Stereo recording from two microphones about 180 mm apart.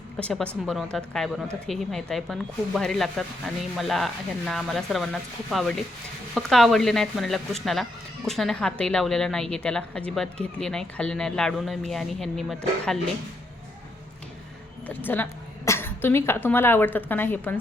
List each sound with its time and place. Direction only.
0.2 s speech: 5° left (ahead or behind)
14.8 s speech: 10° left (ahead or behind)